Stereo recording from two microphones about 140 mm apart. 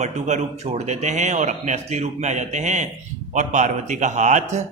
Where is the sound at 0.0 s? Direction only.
55° right (ahead or behind).